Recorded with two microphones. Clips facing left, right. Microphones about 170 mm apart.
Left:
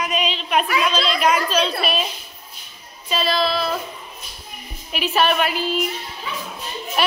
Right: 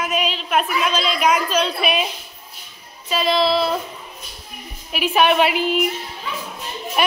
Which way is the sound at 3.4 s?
25° right (ahead or behind).